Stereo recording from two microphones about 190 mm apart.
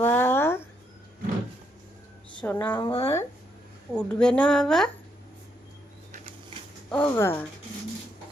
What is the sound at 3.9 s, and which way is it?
Speech, 5° left (ahead or behind).